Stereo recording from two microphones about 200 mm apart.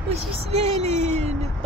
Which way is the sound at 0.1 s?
30° right (ahead or behind).